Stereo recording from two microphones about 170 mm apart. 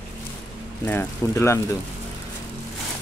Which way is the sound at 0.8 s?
15° left (ahead or behind).